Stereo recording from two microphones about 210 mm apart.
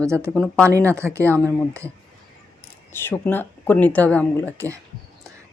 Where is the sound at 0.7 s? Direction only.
15° right (ahead or behind).